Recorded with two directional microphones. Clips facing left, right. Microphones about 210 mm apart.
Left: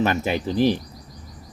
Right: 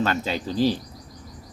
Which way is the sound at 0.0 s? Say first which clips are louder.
Left 3 dB; 15° left (ahead or behind).